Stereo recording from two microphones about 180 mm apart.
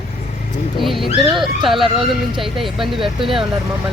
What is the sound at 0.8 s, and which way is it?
Speech, centre (ahead or behind).